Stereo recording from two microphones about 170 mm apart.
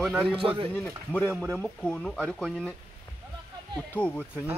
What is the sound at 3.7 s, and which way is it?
Speech, 10° left (ahead or behind).